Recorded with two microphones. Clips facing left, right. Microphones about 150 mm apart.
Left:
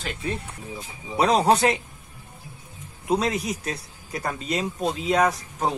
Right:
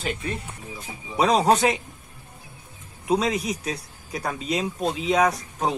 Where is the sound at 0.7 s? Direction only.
10° right (ahead or behind).